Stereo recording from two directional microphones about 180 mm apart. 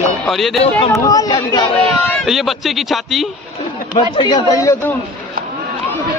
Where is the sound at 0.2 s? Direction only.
Centre (ahead or behind).